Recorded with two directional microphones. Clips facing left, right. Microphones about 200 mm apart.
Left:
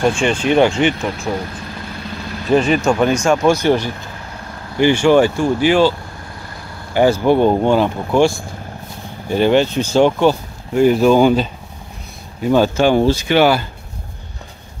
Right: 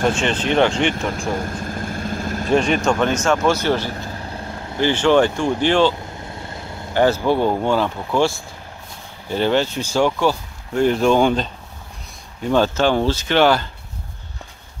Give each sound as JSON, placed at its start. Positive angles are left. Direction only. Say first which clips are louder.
{"t": 0.0, "sound": "speech", "louder": "left 3 dB", "side_deg": 10}
{"t": 1.3, "sound": "vehicle", "louder": "even", "side_deg": -45}
{"t": 2.5, "sound": "speech", "louder": "left 3 dB", "side_deg": 5}
{"t": 6.3, "sound": "vehicle", "louder": "right 2 dB", "side_deg": -25}
{"t": 6.9, "sound": "speech", "louder": "left 4 dB", "side_deg": 15}
{"t": 10.7, "sound": "speech", "louder": "left 4 dB", "side_deg": 5}
{"t": 12.4, "sound": "speech", "louder": "left 4 dB", "side_deg": 10}